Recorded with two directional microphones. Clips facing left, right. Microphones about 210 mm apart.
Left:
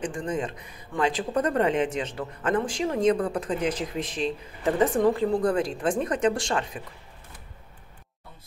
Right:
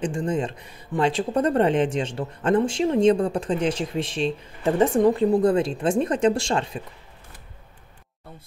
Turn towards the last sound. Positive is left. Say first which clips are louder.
# right 4 dB
turn(degrees=-25)  # may be behind; listen again after turning